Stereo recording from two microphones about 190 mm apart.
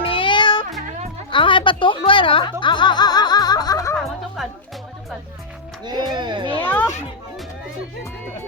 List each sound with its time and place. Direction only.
0.0 s music: 25° left (ahead or behind)
1.3 s speech: 25° left (ahead or behind)
3.9 s music: centre (ahead or behind)
5.8 s speech: 20° right (ahead or behind)
6.1 s a sound: 25° right (ahead or behind)
6.6 s a sound: 10° left (ahead or behind)